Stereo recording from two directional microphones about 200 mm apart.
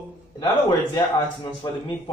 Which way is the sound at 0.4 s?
20° left (ahead or behind).